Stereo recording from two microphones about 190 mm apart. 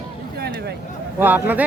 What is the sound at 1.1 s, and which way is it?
Speech, 10° right (ahead or behind).